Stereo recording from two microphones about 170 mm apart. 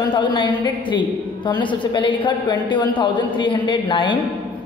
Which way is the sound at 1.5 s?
30° left (ahead or behind).